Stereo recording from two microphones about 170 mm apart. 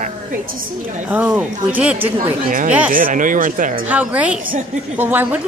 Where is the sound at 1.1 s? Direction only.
10° right (ahead or behind).